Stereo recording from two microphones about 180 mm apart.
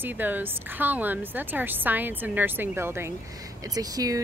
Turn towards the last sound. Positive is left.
turn(degrees=-20)  # may be behind; listen again after turning